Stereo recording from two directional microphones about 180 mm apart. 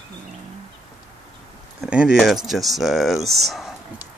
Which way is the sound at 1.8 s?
5° right (ahead or behind).